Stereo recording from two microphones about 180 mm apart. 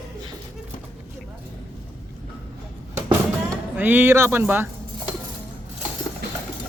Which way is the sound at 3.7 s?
10° right (ahead or behind).